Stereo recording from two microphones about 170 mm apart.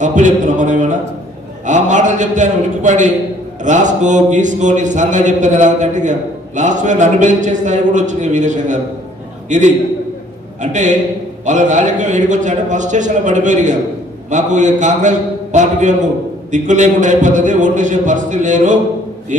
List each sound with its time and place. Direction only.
0.0 s a man's voice: 45° right (ahead or behind)